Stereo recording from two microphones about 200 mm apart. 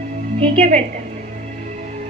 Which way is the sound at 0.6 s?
40° right (ahead or behind).